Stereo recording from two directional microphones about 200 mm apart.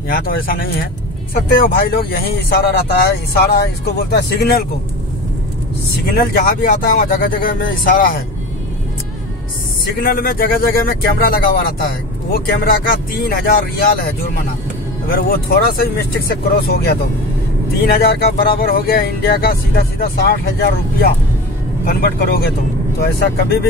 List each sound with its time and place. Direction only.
0.1 s speech: 45° left (ahead or behind)
6.0 s speech: 45° left (ahead or behind)
10.0 s speech: 45° left (ahead or behind)
15.0 s speech: 45° left (ahead or behind)